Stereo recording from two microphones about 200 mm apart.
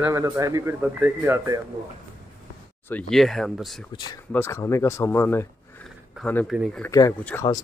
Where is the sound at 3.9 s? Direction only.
20° left (ahead or behind).